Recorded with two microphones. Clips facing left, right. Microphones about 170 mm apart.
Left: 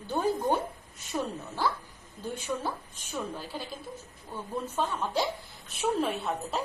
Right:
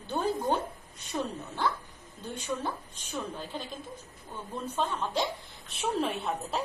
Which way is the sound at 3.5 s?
5° left (ahead or behind).